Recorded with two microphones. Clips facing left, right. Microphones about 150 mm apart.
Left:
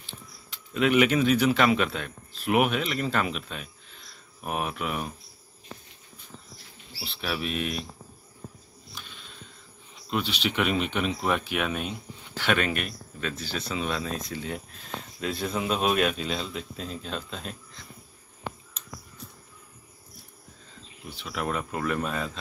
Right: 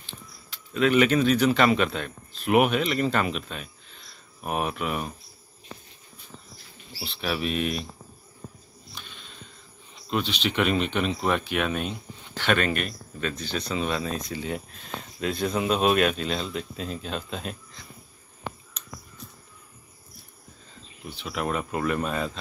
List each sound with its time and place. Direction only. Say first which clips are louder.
0.5 s speech: right 1 dB; 15° left (ahead or behind)
7.0 s speech: right 3 dB; centre (ahead or behind)
9.0 s a sound: right 1 dB; 5° left (ahead or behind)
10.0 s speech: right 1 dB; 5° left (ahead or behind)
18.8 s a sound: right 1 dB; 30° left (ahead or behind)
21.1 s speech: right 2 dB; centre (ahead or behind)